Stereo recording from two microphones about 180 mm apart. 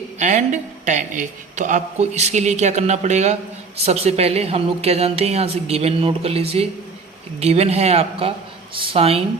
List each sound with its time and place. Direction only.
0.2 s a woman's voice: 40° right (ahead or behind)